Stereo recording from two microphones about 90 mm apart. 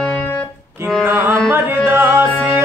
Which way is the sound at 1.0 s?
25° right (ahead or behind).